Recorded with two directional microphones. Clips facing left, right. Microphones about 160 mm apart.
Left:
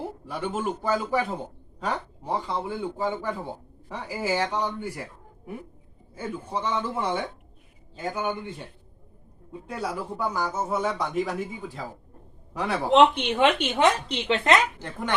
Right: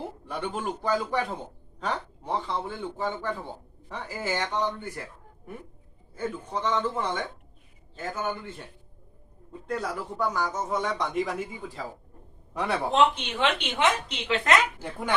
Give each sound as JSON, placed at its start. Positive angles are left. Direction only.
{"t": 0.3, "sound": "a man's voice", "side_deg": 5}
{"t": 6.1, "sound": "a man's voice", "side_deg": 10}
{"t": 12.9, "sound": "speech", "side_deg": 65}
{"t": 13.6, "sound": "a woman's voice", "side_deg": 35}
{"t": 14.8, "sound": "speech", "side_deg": -10}